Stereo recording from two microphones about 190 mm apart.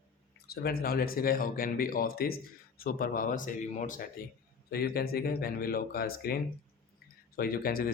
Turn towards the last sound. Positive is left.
turn(degrees=50)  # may be behind; listen again after turning